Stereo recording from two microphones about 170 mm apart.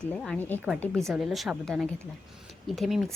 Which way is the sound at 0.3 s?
10° left (ahead or behind).